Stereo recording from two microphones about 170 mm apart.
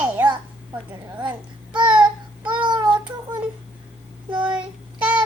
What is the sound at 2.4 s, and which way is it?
Child singing, 30° right (ahead or behind).